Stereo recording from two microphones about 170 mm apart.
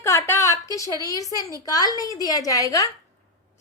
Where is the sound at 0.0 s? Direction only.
15° left (ahead or behind).